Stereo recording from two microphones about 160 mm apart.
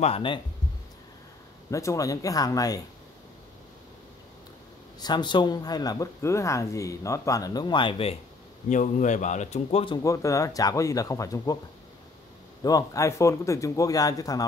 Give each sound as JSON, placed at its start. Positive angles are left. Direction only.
{"t": 0.0, "sound": "speech", "side_deg": 35}
{"t": 1.7, "sound": "speech", "side_deg": 20}
{"t": 5.0, "sound": "speech", "side_deg": 30}
{"t": 8.6, "sound": "a man's voice", "side_deg": 50}
{"t": 10.0, "sound": "speech", "side_deg": 20}
{"t": 12.6, "sound": "speech", "side_deg": 20}